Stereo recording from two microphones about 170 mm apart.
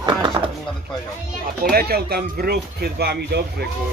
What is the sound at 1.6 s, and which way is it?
Speech, 65° right (ahead or behind).